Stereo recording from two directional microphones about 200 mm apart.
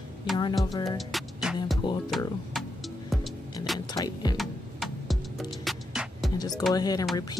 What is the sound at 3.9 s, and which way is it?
Vehicle, 20° left (ahead or behind).